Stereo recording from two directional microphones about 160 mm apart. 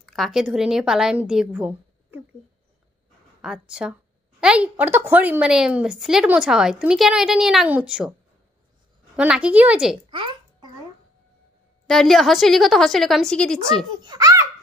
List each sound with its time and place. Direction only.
0.0 s a woman's voice: centre (ahead or behind)
3.4 s a woman's voice: 5° right (ahead or behind)
9.1 s a woman's voice: 5° right (ahead or behind)
10.0 s babbling: 30° right (ahead or behind)
11.9 s a woman's voice: centre (ahead or behind)
14.0 s a sound: 20° right (ahead or behind)